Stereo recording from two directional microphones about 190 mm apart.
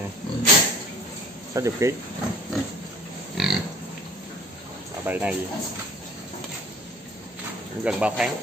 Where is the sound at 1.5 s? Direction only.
15° right (ahead or behind).